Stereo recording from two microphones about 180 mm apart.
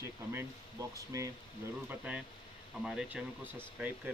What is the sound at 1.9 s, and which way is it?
Speech, 5° right (ahead or behind).